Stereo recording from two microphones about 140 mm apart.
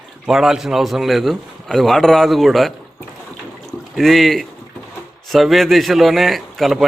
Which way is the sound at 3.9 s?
Centre (ahead or behind).